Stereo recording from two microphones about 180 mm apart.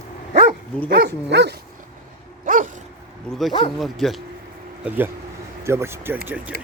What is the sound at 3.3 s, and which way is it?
Speech, 5° left (ahead or behind).